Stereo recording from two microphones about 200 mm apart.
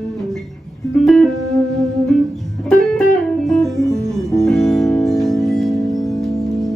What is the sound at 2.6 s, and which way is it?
Guitar, centre (ahead or behind).